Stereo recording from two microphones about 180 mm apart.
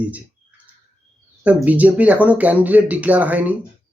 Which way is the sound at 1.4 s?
10° right (ahead or behind).